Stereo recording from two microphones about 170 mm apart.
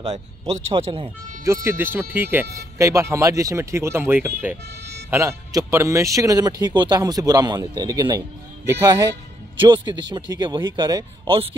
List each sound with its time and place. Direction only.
0.5 s a man's voice: 35° right (ahead or behind)
1.4 s speech: 15° right (ahead or behind); by 11.5 s 30° right (ahead or behind)